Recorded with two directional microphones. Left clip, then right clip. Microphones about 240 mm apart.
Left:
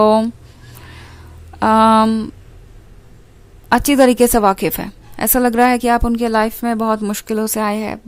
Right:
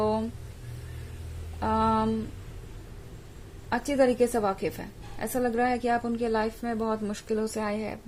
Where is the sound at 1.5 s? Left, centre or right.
Left.